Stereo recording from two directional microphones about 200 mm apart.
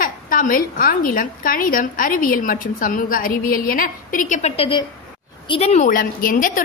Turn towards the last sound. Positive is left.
turn(degrees=45)  # may be behind; listen again after turning